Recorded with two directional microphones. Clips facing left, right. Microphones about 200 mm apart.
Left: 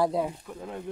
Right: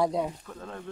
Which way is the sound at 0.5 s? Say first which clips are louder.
Left 3 dB; 15° left (ahead or behind).